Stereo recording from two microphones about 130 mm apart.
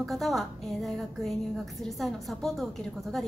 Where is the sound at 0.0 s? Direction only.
Centre (ahead or behind).